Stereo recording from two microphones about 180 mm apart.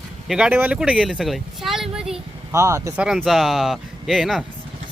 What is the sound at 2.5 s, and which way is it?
Speech, 15° right (ahead or behind).